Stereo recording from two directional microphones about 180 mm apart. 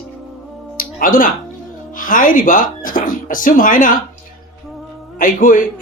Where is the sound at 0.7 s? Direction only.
50° left (ahead or behind).